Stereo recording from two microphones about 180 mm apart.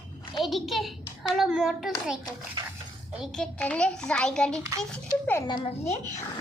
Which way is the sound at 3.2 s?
5° left (ahead or behind).